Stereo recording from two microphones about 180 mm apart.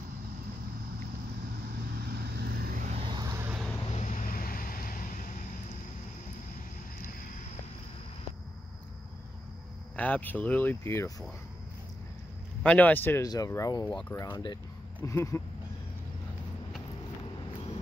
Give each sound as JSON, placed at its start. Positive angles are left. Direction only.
{"t": 2.0, "sound": "vehicle", "side_deg": -60}
{"t": 3.0, "sound": "vehicle", "side_deg": -25}
{"t": 3.9, "sound": "vehicle", "side_deg": 45}
{"t": 9.9, "sound": "speech", "side_deg": 10}
{"t": 12.6, "sound": "speech", "side_deg": 10}